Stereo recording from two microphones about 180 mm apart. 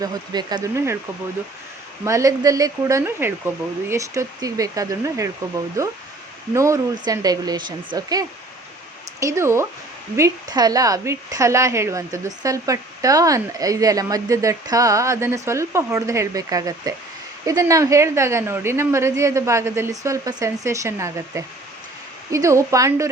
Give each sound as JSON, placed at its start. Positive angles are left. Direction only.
{"t": 0.0, "sound": "a woman's voice", "side_deg": -20}
{"t": 2.0, "sound": "a woman's voice", "side_deg": -15}